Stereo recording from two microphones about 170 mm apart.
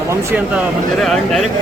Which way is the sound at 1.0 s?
Centre (ahead or behind).